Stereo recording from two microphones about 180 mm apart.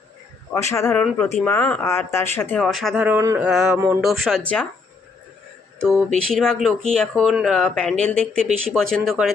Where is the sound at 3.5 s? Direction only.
5° right (ahead or behind).